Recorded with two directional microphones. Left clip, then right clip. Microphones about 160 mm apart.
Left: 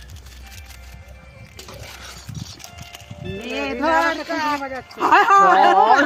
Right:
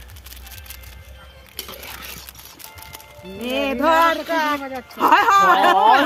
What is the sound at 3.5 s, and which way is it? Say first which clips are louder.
Speech: right 2 dB; 60° right (ahead or behind).